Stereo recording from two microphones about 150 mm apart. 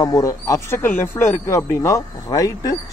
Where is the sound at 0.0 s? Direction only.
25° left (ahead or behind).